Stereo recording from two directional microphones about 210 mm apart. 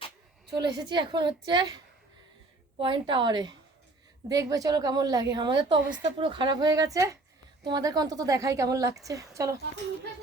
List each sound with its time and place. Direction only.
0.5 s a woman's voice: 20° right (ahead or behind)